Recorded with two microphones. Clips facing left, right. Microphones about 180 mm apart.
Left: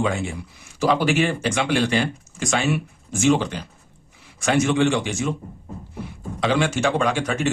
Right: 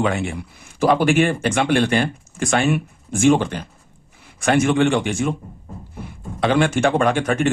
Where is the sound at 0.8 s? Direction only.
50° right (ahead or behind).